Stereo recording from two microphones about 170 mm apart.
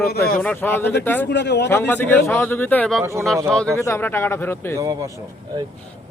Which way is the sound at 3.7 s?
15° left (ahead or behind).